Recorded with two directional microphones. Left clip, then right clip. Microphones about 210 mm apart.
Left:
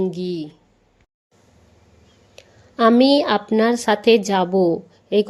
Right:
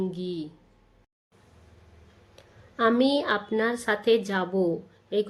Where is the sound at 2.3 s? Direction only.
30° left (ahead or behind).